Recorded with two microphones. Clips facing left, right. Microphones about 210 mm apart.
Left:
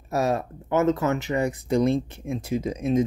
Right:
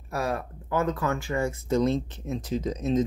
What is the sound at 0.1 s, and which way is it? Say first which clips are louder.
Speech: left 5 dB; 25° left (ahead or behind).